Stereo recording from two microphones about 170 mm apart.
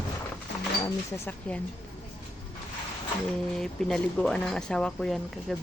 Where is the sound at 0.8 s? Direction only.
15° left (ahead or behind).